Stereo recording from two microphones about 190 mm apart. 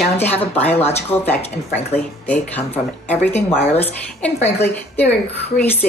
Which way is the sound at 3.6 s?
35° left (ahead or behind).